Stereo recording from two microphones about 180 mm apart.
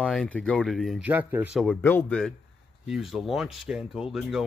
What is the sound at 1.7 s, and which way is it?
Speech, 10° left (ahead or behind).